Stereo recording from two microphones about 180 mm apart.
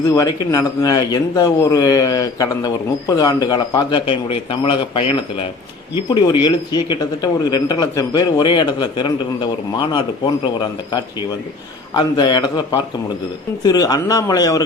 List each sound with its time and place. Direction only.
0.1 s a man's voice: 20° left (ahead or behind)
11.9 s a man's voice: 25° left (ahead or behind)
13.7 s a man's voice: 20° left (ahead or behind)